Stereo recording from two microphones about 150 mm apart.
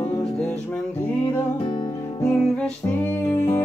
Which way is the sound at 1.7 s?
30° left (ahead or behind).